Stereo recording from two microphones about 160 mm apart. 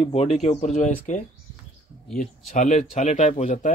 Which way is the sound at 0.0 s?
40° left (ahead or behind).